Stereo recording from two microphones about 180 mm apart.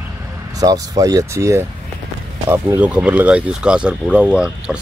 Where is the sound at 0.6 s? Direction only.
20° right (ahead or behind).